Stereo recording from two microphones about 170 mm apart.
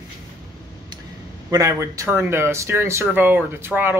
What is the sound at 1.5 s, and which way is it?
A man's voice, 20° right (ahead or behind).